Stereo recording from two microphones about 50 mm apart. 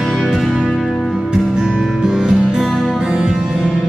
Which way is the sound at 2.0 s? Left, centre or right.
Centre.